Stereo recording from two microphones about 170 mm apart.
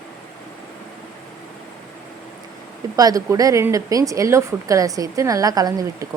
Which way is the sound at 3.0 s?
20° right (ahead or behind).